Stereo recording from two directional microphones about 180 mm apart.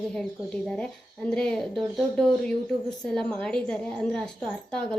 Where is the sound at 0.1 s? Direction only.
Centre (ahead or behind).